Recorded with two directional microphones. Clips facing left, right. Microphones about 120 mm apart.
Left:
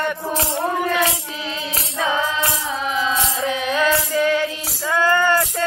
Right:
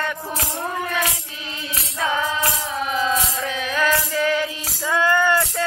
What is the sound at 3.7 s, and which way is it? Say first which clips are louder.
Music: left 1 dB; 20° left (ahead or behind).